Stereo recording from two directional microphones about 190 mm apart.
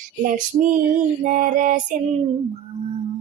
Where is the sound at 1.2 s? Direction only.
45° right (ahead or behind).